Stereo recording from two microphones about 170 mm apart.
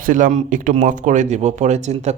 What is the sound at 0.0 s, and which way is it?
A man's voice, 50° right (ahead or behind).